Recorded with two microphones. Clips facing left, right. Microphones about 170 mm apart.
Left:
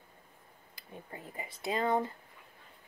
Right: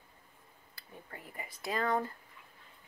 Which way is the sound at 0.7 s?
20° left (ahead or behind).